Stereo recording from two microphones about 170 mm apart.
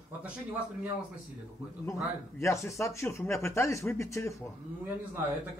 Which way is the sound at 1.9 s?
15° left (ahead or behind).